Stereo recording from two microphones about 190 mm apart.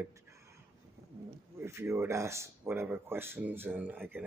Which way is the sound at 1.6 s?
15° right (ahead or behind).